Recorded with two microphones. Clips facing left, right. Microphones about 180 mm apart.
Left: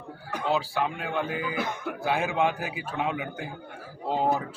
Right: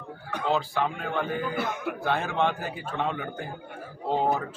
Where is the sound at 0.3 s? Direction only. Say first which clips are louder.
Even; 5° left (ahead or behind).